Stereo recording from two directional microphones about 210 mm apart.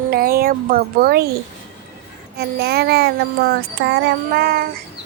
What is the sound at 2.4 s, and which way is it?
A child's voice, 50° right (ahead or behind).